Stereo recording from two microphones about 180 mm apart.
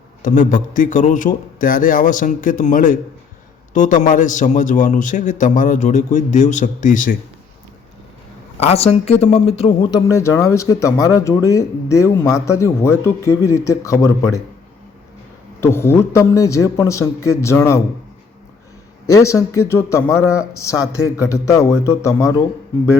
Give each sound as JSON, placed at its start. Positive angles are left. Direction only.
{"t": 0.2, "sound": "speech", "side_deg": 45}
{"t": 8.5, "sound": "speech", "side_deg": 35}
{"t": 9.9, "sound": "speech", "side_deg": 15}
{"t": 15.6, "sound": "speech", "side_deg": 15}
{"t": 19.1, "sound": "speech", "side_deg": 15}